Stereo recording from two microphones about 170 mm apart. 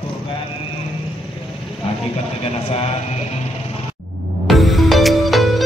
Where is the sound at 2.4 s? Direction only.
35° left (ahead or behind).